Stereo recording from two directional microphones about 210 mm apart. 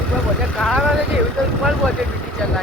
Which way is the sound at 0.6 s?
5° left (ahead or behind).